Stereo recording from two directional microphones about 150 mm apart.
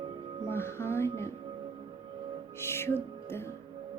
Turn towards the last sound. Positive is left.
turn(degrees=15)  # may be behind; listen again after turning